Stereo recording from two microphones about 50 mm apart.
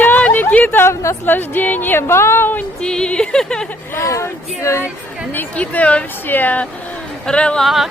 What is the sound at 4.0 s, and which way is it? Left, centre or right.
Speech, left.